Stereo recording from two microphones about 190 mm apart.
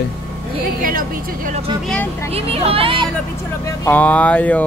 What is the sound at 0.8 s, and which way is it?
Speech, 45° right (ahead or behind).